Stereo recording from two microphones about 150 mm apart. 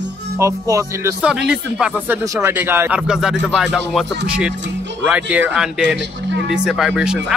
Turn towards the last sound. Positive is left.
turn(degrees=-5)  # may be behind; listen again after turning